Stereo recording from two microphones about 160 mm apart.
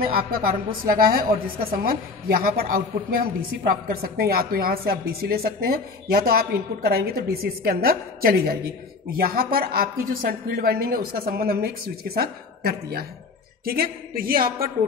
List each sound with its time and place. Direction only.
0.0 s a woman's voice: 65° right (ahead or behind)